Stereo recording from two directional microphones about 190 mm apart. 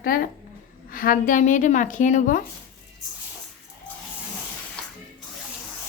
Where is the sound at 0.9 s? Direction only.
45° left (ahead or behind).